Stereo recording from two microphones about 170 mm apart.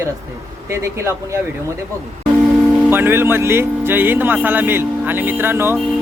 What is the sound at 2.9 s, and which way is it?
Speech, 10° right (ahead or behind).